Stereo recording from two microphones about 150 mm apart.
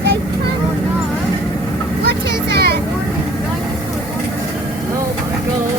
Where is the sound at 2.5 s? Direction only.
90° right.